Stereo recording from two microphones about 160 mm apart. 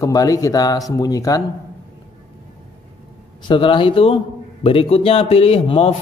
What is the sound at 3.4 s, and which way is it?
A man's voice, 30° left (ahead or behind).